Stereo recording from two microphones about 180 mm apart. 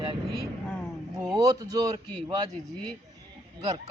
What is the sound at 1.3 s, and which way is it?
A man's voice, 20° right (ahead or behind).